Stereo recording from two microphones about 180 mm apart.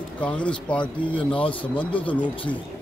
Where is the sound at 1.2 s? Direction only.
30° left (ahead or behind).